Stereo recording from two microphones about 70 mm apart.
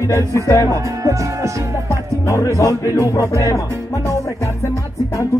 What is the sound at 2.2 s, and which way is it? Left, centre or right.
Music, left.